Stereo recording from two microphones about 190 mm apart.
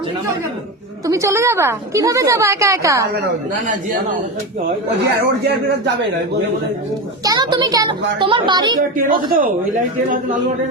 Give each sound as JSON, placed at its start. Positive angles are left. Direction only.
{"t": 1.0, "sound": "a woman's voice", "side_deg": -15}
{"t": 5.0, "sound": "a man's voice", "side_deg": -60}
{"t": 7.3, "sound": "a woman's voice", "side_deg": -20}
{"t": 9.0, "sound": "a man's voice", "side_deg": -45}